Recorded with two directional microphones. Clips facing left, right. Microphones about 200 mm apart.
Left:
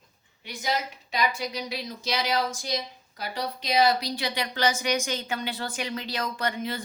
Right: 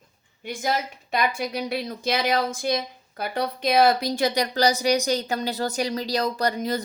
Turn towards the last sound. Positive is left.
turn(degrees=-40)  # may be behind; listen again after turning